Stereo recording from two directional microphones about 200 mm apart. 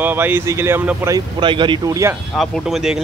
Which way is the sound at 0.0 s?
10° right (ahead or behind).